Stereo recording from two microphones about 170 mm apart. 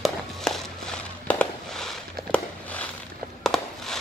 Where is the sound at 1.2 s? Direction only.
5° left (ahead or behind).